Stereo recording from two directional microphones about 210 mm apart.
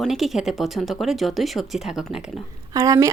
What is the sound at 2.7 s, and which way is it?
Speech, 15° right (ahead or behind).